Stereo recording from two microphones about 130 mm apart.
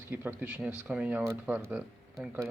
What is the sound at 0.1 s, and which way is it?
Speech, 15° right (ahead or behind).